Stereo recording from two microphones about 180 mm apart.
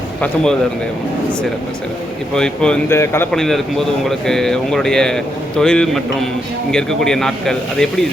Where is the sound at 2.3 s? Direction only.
5° left (ahead or behind).